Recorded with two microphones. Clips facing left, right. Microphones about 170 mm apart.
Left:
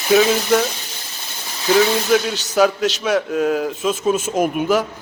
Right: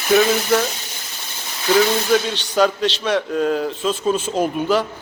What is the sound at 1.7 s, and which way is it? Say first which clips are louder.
A man's voice: left 1 dB; 5° left (ahead or behind).